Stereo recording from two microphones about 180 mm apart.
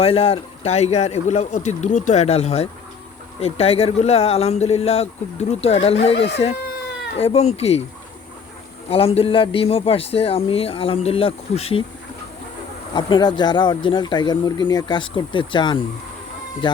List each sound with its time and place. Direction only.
0.0 s a man's voice: 30° left (ahead or behind)
8.9 s a man's voice: 30° left (ahead or behind)
12.9 s speech: 25° left (ahead or behind)